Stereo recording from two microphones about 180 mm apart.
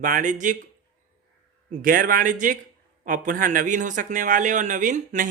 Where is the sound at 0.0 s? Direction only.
45° right (ahead or behind).